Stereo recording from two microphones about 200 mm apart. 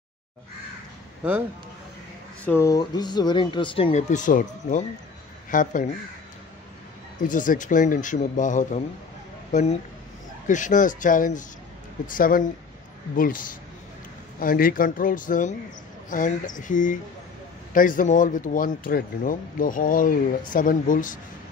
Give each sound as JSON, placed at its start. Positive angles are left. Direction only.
{"t": 1.2, "sound": "speech", "side_deg": -5}
{"t": 2.4, "sound": "a man's voice", "side_deg": 15}
{"t": 7.2, "sound": "a man's voice", "side_deg": 40}
{"t": 14.4, "sound": "a man's voice", "side_deg": 45}